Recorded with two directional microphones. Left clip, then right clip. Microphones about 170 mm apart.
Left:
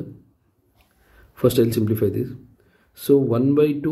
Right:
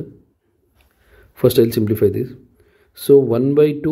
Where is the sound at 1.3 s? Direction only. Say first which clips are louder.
Right 4 dB; 30° right (ahead or behind).